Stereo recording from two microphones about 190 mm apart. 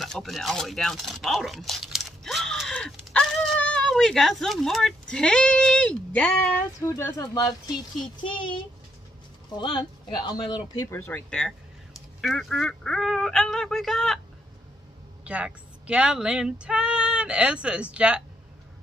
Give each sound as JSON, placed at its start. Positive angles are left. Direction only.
{"t": 0.0, "sound": "speech", "side_deg": 0}
{"t": 9.6, "sound": "speech", "side_deg": 25}
{"t": 15.2, "sound": "speech", "side_deg": -5}